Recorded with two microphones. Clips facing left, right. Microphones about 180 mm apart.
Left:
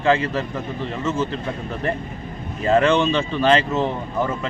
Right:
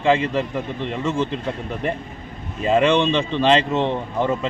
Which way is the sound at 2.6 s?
10° right (ahead or behind).